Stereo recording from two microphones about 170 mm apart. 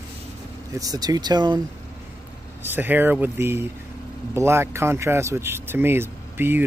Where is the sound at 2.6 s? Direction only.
10° right (ahead or behind).